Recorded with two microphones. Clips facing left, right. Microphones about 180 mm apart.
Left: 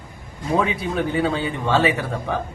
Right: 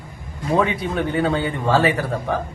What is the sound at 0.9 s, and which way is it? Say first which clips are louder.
Speech: right 1 dB; centre (ahead or behind).